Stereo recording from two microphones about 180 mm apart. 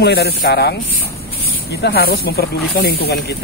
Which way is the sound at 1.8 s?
60° left (ahead or behind).